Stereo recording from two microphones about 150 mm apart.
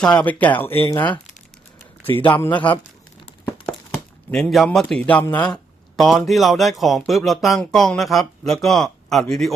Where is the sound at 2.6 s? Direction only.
35° left (ahead or behind).